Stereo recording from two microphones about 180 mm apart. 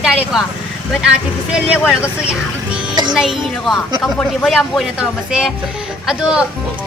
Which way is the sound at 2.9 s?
25° right (ahead or behind).